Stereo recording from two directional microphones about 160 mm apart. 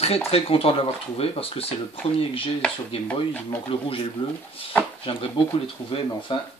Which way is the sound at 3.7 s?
35° left (ahead or behind).